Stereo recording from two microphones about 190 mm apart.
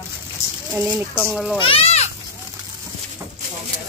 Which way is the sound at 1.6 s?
30° left (ahead or behind).